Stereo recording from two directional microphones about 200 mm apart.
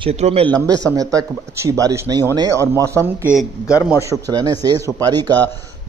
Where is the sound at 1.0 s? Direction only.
15° right (ahead or behind).